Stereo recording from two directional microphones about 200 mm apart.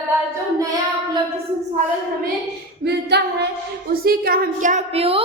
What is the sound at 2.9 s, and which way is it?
Female singing, 55° right (ahead or behind).